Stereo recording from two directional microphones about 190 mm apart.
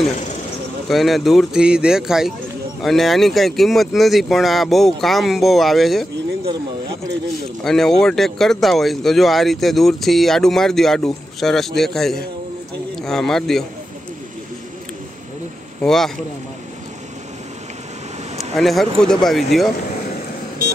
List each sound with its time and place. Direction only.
0.8 s speech: centre (ahead or behind)
7.6 s speech: centre (ahead or behind)
15.8 s speech: centre (ahead or behind)
18.6 s speech: centre (ahead or behind)